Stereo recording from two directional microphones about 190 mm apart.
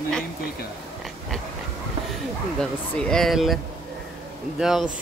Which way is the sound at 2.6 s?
5° left (ahead or behind).